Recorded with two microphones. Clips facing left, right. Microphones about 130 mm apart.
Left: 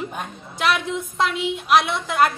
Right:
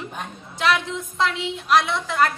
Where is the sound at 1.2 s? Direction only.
15° left (ahead or behind).